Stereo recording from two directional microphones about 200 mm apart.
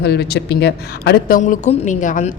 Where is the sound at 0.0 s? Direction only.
55° left (ahead or behind).